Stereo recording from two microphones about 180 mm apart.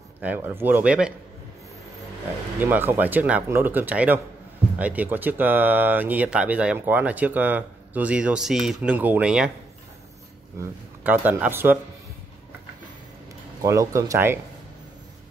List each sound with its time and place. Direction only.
0.2 s speech: 10° right (ahead or behind)
2.6 s speech: 10° right (ahead or behind)
10.6 s speech: 10° right (ahead or behind)
13.6 s speech: 15° right (ahead or behind)